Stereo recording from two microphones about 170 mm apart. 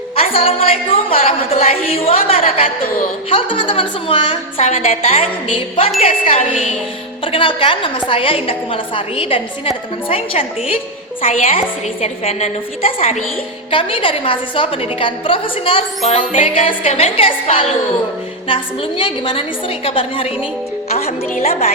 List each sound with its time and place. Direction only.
0.2 s a woman's voice: 35° left (ahead or behind)
2.6 s speech: 55° left (ahead or behind)
3.2 s a woman's voice: 30° left (ahead or behind)
7.3 s a woman's voice: 30° left (ahead or behind)
11.2 s a woman's voice: 45° left (ahead or behind)